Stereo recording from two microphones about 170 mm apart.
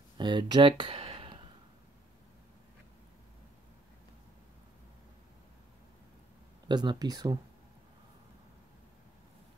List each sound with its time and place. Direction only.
0.2 s speech: 25° right (ahead or behind)
6.7 s speech: 25° right (ahead or behind)